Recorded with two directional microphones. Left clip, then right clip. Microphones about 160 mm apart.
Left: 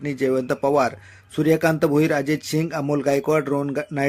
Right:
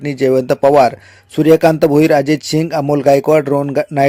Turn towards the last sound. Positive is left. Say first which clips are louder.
# right 9 dB
turn(degrees=-35)  # may be behind; listen again after turning